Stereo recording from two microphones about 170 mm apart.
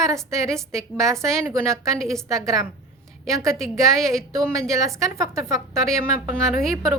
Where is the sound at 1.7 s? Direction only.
5° left (ahead or behind).